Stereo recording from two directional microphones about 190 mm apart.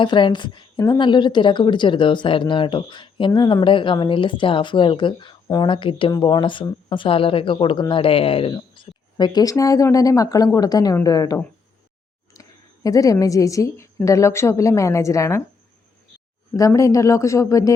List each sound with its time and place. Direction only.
0.0 s a woman's voice: 25° left (ahead or behind)
16.6 s speech: 15° left (ahead or behind)